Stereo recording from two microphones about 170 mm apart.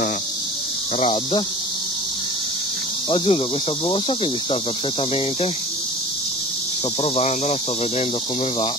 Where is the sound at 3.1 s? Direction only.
30° left (ahead or behind).